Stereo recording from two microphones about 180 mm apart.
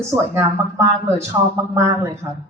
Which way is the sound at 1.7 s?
15° right (ahead or behind).